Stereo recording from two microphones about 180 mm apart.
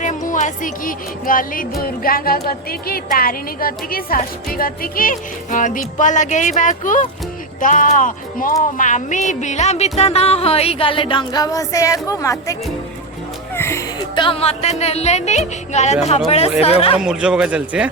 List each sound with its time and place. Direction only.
0.0 s music: 45° left (ahead or behind)
1.8 s speech: 55° left (ahead or behind); by 12.5 s 15° left (ahead or behind)
13.6 s speech: 15° left (ahead or behind); by 17.0 s 35° left (ahead or behind)
17.0 s a man's voice: 5° right (ahead or behind)